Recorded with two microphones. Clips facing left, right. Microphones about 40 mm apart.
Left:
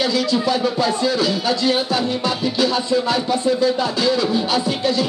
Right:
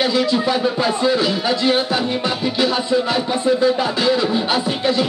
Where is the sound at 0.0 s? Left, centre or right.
Right.